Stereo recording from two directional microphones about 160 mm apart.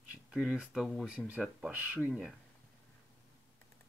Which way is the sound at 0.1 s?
5° right (ahead or behind).